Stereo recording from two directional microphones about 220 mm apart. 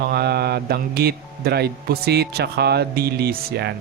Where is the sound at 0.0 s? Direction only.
50° right (ahead or behind).